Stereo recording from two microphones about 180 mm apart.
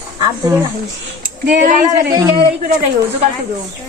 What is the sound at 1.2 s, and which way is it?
Speech, 55° right (ahead or behind).